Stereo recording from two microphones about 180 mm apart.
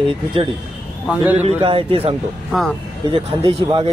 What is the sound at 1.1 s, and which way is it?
Speech, 10° right (ahead or behind).